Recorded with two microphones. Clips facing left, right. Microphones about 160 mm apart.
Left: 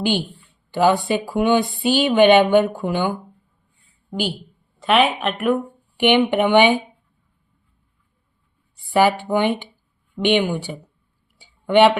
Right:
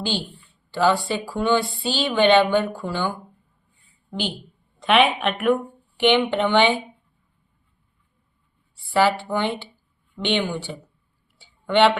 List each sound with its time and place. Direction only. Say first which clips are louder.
0.0 s a woman's voice: left 6 dB; 15° left (ahead or behind)
6.0 s speech: left 3 dB; 15° left (ahead or behind)
8.7 s speech: left 3 dB; 15° left (ahead or behind)
11.3 s tick-tock: left 4 dB; 15° left (ahead or behind)